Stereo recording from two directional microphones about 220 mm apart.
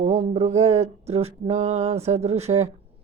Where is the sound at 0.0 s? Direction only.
25° right (ahead or behind).